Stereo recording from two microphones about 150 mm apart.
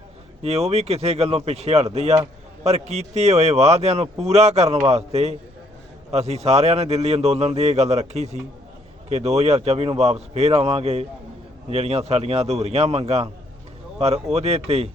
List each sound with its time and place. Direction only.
0.4 s a man's voice: 45° right (ahead or behind)